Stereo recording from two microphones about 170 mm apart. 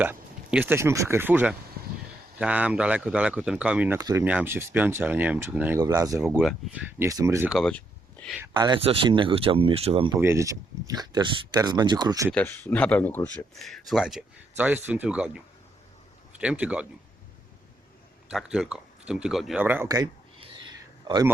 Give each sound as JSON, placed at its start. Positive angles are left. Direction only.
{"t": 0.0, "sound": "speech", "side_deg": -10}
{"t": 3.9, "sound": "speech", "side_deg": -20}
{"t": 5.8, "sound": "speech", "side_deg": -20}
{"t": 6.4, "sound": "speech", "side_deg": 0}
{"t": 7.0, "sound": "speech", "side_deg": -15}
{"t": 7.5, "sound": "speech", "side_deg": 5}
{"t": 8.5, "sound": "speech", "side_deg": -25}
{"t": 10.2, "sound": "speech", "side_deg": -15}
{"t": 12.3, "sound": "speech", "side_deg": 10}
{"t": 18.3, "sound": "speech", "side_deg": -5}
{"t": 21.1, "sound": "a man's voice", "side_deg": -25}